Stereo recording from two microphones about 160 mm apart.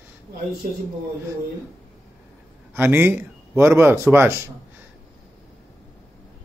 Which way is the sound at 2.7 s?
10° right (ahead or behind).